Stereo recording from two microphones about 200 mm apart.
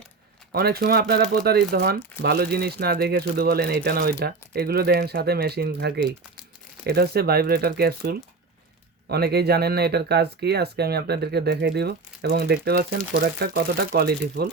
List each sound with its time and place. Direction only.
0.5 s speech: 50° right (ahead or behind)